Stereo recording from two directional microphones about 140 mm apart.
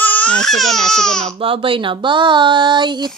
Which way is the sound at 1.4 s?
40° right (ahead or behind).